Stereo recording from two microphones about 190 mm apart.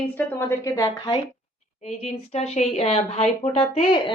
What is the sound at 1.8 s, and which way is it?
Speech, 35° left (ahead or behind).